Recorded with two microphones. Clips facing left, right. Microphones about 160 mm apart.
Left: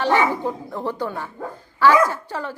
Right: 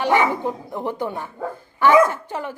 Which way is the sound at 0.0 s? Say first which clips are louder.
Even; 15° right (ahead or behind).